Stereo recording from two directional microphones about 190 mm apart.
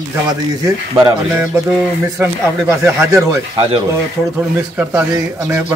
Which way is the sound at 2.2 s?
15° right (ahead or behind).